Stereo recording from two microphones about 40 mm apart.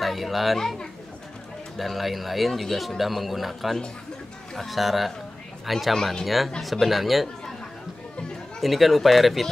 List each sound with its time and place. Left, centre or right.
0.0 s a child's voice: centre
1.8 s speech: centre
8.5 s speech: centre